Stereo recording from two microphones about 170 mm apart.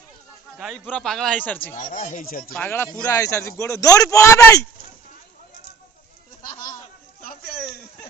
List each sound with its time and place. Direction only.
0.6 s speech: centre (ahead or behind)
1.9 s speech: 50° left (ahead or behind)
2.5 s a man's voice: 10° left (ahead or behind)